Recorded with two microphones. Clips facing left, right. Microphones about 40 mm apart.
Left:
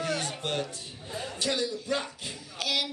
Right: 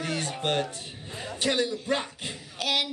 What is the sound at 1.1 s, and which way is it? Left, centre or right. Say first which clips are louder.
Dog: right 3 dB; right.